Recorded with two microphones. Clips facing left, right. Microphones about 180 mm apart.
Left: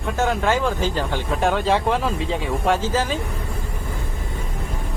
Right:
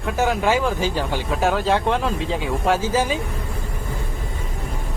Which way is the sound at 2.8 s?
10° right (ahead or behind).